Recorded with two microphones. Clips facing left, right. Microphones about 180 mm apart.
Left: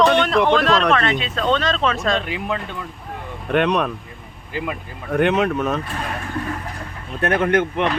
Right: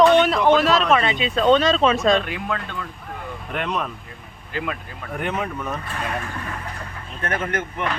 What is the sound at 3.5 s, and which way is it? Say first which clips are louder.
Speech: left 8 dB; 70° left (ahead or behind).